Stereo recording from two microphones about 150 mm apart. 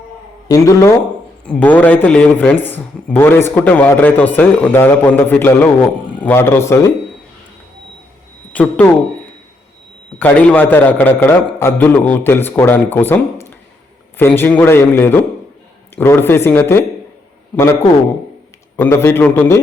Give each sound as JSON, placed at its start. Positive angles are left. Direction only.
{"t": 0.4, "sound": "speech", "side_deg": 20}
{"t": 1.5, "sound": "speech", "side_deg": 10}
{"t": 8.5, "sound": "speech", "side_deg": 10}
{"t": 10.2, "sound": "speech", "side_deg": 10}
{"t": 18.8, "sound": "speech", "side_deg": 15}